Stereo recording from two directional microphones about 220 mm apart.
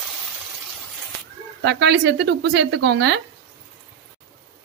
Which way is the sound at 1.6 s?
50° right (ahead or behind).